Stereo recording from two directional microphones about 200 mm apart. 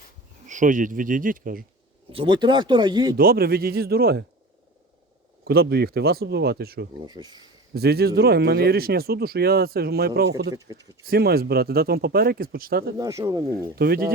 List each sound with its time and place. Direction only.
0.4 s speech: 40° right (ahead or behind)
2.1 s speech: 20° right (ahead or behind)
3.2 s speech: 50° right (ahead or behind)
5.5 s speech: 50° right (ahead or behind)
7.0 s speech: 20° right (ahead or behind)
7.7 s speech: 55° right (ahead or behind)
10.5 s speech: 15° right (ahead or behind)
11.0 s speech: 50° right (ahead or behind)
13.0 s speech: 15° right (ahead or behind)
13.5 s speech: 50° right (ahead or behind)